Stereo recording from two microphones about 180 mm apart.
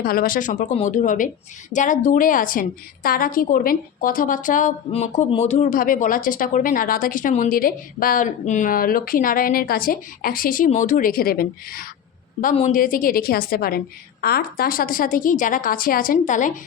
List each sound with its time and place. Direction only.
0.0 s speech: 55° left (ahead or behind)